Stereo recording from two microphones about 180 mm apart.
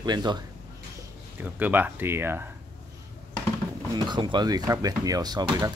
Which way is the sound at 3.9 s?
25° right (ahead or behind).